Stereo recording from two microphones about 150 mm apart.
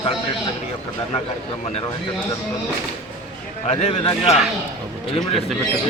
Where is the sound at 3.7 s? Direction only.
40° left (ahead or behind).